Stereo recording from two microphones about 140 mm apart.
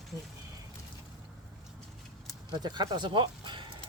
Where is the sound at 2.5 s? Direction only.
30° right (ahead or behind).